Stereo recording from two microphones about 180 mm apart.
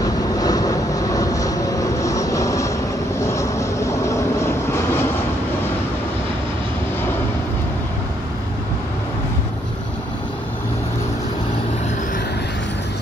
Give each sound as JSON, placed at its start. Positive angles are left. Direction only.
{"t": 0.0, "sound": "vehicle", "side_deg": 20}